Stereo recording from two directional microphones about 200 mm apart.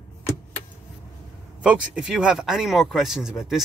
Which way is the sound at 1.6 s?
5° right (ahead or behind).